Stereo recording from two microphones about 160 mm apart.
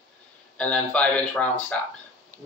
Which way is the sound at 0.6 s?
10° left (ahead or behind).